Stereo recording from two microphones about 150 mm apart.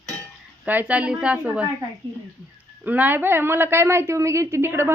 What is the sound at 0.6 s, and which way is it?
A woman's voice, 10° right (ahead or behind).